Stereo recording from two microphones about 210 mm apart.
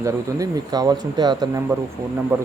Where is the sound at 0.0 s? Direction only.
15° right (ahead or behind).